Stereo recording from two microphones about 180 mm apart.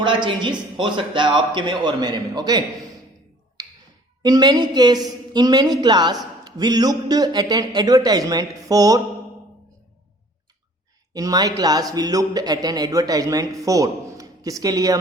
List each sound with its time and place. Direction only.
0.0 s a man's voice: 25° right (ahead or behind)
3.6 s a sound: 20° right (ahead or behind)
4.2 s a man's voice: 25° right (ahead or behind)
11.1 s a man's voice: 20° right (ahead or behind)